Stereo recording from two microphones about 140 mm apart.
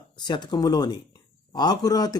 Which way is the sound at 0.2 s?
30° left (ahead or behind).